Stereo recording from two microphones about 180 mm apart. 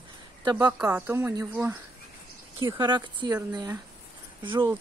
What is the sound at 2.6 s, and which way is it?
Speech, 25° right (ahead or behind).